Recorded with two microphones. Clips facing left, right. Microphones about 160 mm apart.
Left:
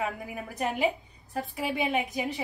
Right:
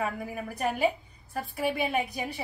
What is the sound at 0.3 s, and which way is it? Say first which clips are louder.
A woman's voice: right 1 dB; 20° left (ahead or behind).